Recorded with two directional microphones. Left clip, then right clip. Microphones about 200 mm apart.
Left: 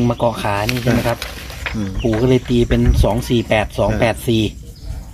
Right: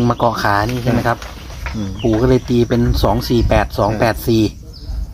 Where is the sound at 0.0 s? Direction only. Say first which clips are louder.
Right 2 dB; 20° right (ahead or behind).